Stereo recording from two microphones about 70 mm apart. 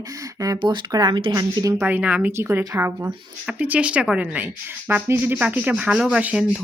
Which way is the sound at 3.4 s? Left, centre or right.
Centre.